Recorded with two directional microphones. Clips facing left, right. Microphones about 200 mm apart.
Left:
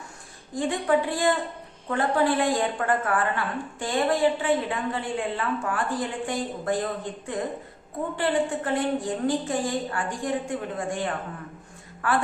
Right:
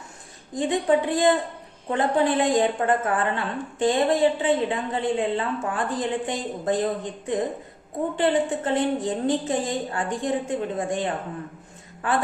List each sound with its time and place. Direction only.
0.5 s a woman's voice: 20° right (ahead or behind)